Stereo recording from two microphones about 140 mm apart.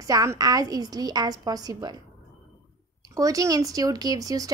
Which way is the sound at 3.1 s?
25° right (ahead or behind).